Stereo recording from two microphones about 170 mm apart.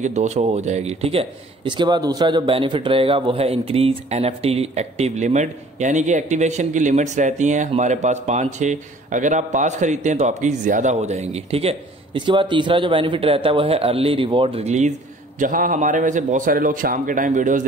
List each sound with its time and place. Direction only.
0.0 s speech: 45° right (ahead or behind)